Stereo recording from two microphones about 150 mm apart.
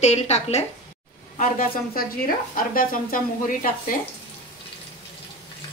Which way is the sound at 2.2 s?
70° left (ahead or behind).